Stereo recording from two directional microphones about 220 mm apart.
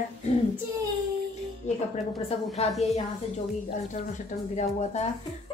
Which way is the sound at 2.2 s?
30° left (ahead or behind).